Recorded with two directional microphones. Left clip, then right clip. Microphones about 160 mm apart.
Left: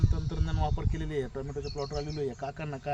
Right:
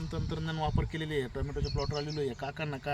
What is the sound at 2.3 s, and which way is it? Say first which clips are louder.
Speech: even; 20° left (ahead or behind).